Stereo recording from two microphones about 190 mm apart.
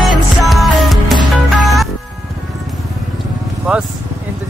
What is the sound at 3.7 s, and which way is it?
Speech, 5° right (ahead or behind).